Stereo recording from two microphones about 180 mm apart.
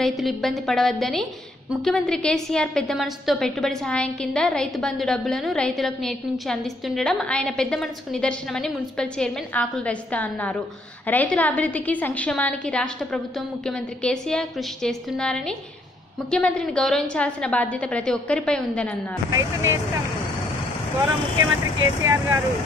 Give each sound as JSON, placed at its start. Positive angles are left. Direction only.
{"t": 0.0, "sound": "a woman's voice", "side_deg": 0}
{"t": 19.3, "sound": "speech", "side_deg": -15}
{"t": 22.0, "sound": "speech", "side_deg": -15}